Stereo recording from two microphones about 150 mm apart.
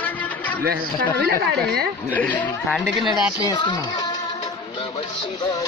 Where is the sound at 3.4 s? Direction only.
30° left (ahead or behind).